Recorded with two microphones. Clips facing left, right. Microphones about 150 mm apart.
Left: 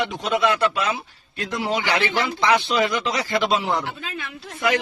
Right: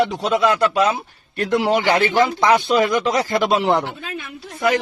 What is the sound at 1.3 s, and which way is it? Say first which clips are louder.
Speech: right 7 dB; 65° right (ahead or behind).